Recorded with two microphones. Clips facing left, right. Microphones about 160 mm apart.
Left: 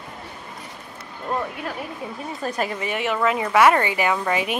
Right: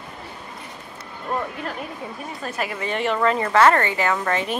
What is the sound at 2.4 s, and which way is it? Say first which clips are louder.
Speech: left 3 dB; 35° left (ahead or behind).